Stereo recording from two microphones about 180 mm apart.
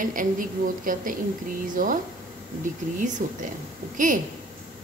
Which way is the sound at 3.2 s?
45° right (ahead or behind).